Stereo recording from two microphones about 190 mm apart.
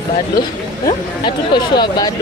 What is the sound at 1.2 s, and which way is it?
Speech, 25° left (ahead or behind).